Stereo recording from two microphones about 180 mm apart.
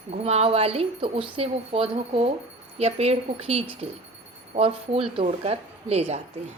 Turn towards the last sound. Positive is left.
turn(degrees=-35)  # may be behind; listen again after turning